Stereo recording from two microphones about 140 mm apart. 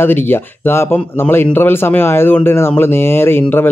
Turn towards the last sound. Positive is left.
turn(degrees=15)  # may be behind; listen again after turning